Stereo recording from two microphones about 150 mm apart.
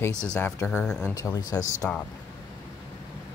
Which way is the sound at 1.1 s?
25° left (ahead or behind).